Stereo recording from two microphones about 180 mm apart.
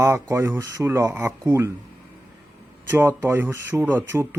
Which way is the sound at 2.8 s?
15° right (ahead or behind).